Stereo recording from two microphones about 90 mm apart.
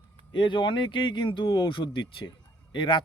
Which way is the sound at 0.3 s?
60° left (ahead or behind).